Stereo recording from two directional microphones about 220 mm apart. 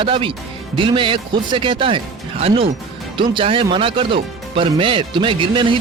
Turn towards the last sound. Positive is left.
turn(degrees=-25)  # may be behind; listen again after turning